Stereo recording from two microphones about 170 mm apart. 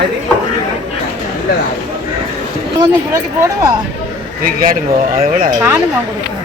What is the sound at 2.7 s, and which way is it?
Speech, 20° right (ahead or behind).